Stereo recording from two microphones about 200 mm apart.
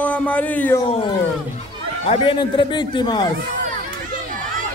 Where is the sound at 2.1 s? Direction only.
25° left (ahead or behind).